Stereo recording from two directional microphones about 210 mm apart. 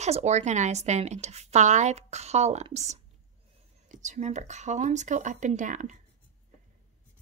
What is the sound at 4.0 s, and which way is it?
Speech, 35° right (ahead or behind).